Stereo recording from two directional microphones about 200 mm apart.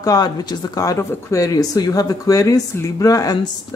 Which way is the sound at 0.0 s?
20° left (ahead or behind).